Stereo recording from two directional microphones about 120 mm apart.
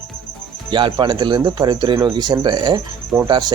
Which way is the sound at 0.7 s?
40° right (ahead or behind).